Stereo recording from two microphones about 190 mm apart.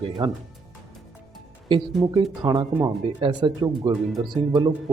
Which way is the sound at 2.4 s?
25° right (ahead or behind).